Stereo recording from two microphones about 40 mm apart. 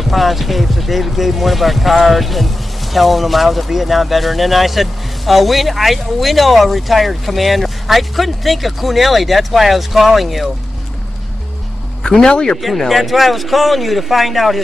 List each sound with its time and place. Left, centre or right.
0.0 s speech: centre
12.0 s speech: centre
12.6 s speech: centre